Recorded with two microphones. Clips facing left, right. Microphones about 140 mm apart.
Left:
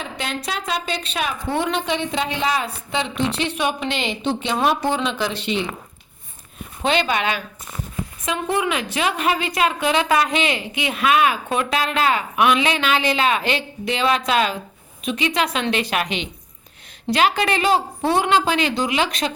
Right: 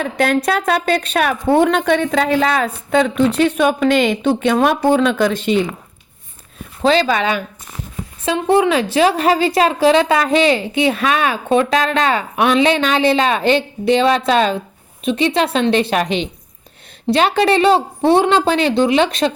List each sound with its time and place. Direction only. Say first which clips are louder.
0.0 s a woman's voice: right 12 dB; 55° right (ahead or behind)
6.8 s a woman's voice: right 6 dB; 35° right (ahead or behind)